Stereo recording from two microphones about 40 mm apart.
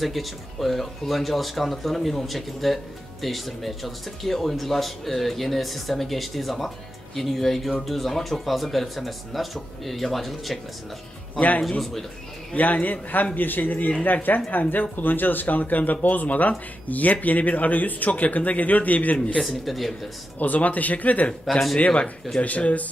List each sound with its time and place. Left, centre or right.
0.0 s speech: centre
11.3 s speech: left
19.4 s speech: centre
20.3 s speech: left
21.5 s speech: centre
21.7 s speech: left